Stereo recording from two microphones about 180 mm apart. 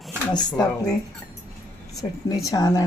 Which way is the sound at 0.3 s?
20° left (ahead or behind).